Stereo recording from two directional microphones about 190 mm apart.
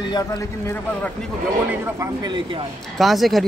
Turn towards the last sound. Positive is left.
turn(degrees=0)  # may be behind; listen again after turning